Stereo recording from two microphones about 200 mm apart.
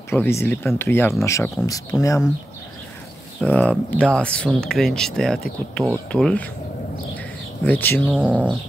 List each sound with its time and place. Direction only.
0.1 s speech: 10° left (ahead or behind)
3.3 s speech: 5° left (ahead or behind)
7.6 s speech: 10° left (ahead or behind)
8.1 s speech: 5° right (ahead or behind)